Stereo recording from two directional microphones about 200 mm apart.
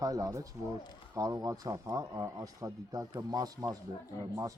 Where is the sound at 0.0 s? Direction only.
15° right (ahead or behind).